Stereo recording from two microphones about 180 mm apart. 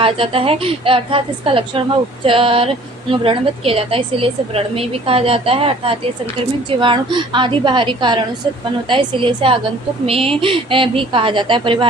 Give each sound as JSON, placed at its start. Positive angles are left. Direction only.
{"t": 0.0, "sound": "a woman's voice", "side_deg": -30}